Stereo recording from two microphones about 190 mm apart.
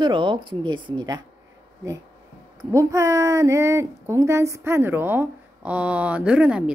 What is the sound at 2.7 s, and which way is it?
A woman's voice, 15° right (ahead or behind).